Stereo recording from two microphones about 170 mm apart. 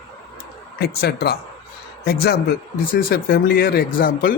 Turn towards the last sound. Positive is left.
turn(degrees=55)  # may be behind; listen again after turning